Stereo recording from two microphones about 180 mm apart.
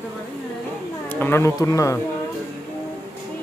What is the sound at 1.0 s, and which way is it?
Speech, 10° left (ahead or behind).